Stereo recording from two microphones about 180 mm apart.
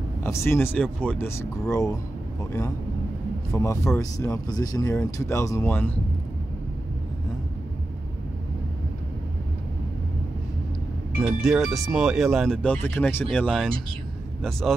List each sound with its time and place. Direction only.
0.2 s speech: 15° left (ahead or behind)
3.5 s speech: 15° left (ahead or behind)
11.1 s speech: centre (ahead or behind)